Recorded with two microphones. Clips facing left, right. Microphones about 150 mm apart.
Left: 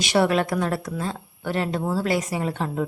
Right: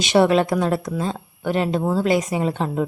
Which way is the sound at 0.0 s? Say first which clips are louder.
Right 4 dB; 20° right (ahead or behind).